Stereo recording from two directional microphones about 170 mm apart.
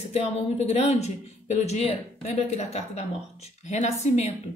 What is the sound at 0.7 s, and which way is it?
A woman's voice, 40° left (ahead or behind).